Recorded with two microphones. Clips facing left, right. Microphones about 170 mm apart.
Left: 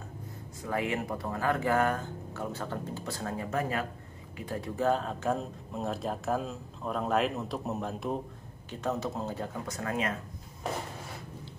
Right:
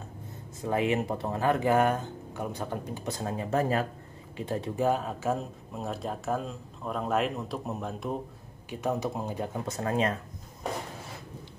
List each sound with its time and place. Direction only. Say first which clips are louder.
0.6 s speech: right 5 dB; 20° right (ahead or behind)
3.4 s speech: right 6 dB; 35° right (ahead or behind)
4.8 s speech: even; 10° right (ahead or behind)
8.6 s speech: right 2 dB; 10° right (ahead or behind)
9.7 s speech: right 5 dB; 30° right (ahead or behind)